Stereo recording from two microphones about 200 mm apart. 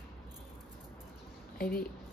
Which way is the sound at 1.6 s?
50° left (ahead or behind).